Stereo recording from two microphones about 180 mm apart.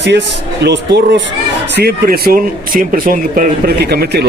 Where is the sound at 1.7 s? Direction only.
60° right (ahead or behind).